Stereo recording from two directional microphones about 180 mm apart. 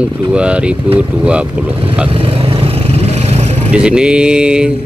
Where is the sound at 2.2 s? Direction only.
30° right (ahead or behind).